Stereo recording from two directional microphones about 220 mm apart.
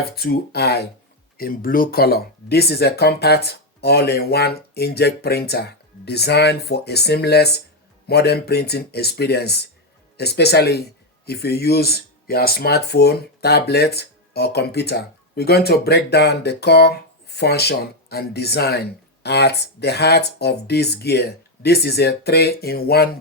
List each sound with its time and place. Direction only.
0.2 s speech: 45° left (ahead or behind)